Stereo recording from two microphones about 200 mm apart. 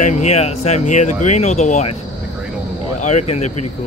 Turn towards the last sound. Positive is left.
turn(degrees=35)  # may be behind; listen again after turning